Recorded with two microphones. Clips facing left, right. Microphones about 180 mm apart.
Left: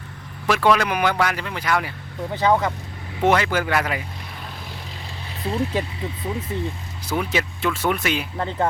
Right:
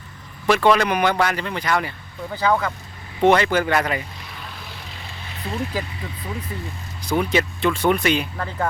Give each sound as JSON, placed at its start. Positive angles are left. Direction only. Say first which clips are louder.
{"t": 0.4, "sound": "speech", "louder": "right 2 dB", "side_deg": 5}
{"t": 2.3, "sound": "speech", "louder": "left 1 dB", "side_deg": 20}
{"t": 3.2, "sound": "speech", "louder": "right 3 dB", "side_deg": 5}
{"t": 5.5, "sound": "speech", "louder": "left 3 dB", "side_deg": 25}
{"t": 7.0, "sound": "speech", "louder": "right 3 dB", "side_deg": 5}
{"t": 8.4, "sound": "speech", "louder": "left 3 dB", "side_deg": 20}